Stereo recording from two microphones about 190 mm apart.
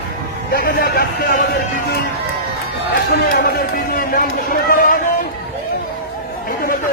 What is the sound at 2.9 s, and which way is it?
Speech, 55° left (ahead or behind).